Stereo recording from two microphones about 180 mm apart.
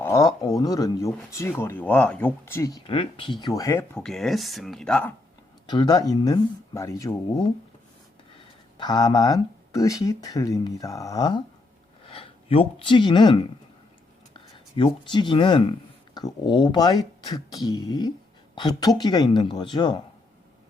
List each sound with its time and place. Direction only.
0.0 s speech: 20° left (ahead or behind)
3.9 s speech: 5° left (ahead or behind)
5.6 s speech: 25° left (ahead or behind)
8.4 s speech: 25° left (ahead or behind)